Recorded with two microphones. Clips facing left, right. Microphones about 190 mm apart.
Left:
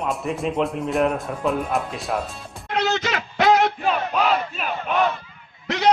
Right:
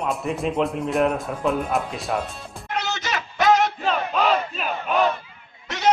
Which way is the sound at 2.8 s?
60° left (ahead or behind).